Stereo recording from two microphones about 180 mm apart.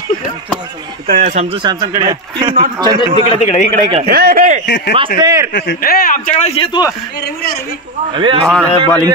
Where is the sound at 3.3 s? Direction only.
40° left (ahead or behind).